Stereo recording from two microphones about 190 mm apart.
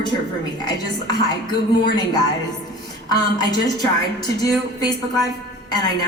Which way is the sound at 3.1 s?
20° left (ahead or behind).